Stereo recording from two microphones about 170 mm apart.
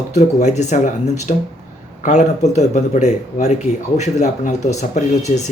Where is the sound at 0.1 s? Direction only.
40° left (ahead or behind).